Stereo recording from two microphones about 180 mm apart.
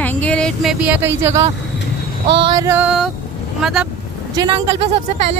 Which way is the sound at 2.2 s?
30° right (ahead or behind).